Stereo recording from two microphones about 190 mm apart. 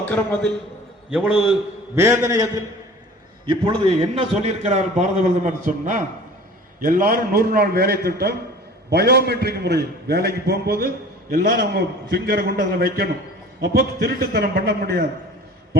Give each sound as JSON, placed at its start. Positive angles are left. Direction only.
{"t": 0.0, "sound": "a man's voice", "side_deg": 5}
{"t": 1.1, "sound": "a man's voice", "side_deg": -5}